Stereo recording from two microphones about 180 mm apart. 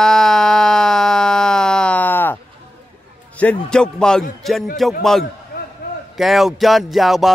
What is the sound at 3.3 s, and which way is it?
Speech, 5° left (ahead or behind).